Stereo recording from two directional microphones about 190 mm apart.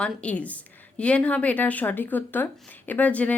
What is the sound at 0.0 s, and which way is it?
A woman's voice, 5° left (ahead or behind).